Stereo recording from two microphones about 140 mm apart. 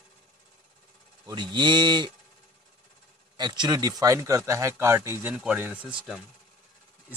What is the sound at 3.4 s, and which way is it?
Speech, 30° right (ahead or behind).